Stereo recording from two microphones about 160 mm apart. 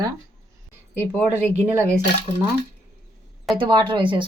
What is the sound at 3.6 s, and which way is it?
Speech, 30° right (ahead or behind).